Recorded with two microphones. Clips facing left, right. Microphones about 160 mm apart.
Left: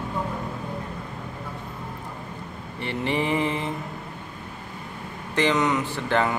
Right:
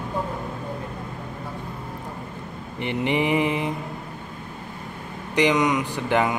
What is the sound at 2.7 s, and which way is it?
Mantra, 15° right (ahead or behind).